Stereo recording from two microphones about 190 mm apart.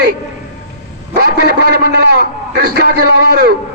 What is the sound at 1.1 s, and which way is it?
A man's voice, 60° right (ahead or behind).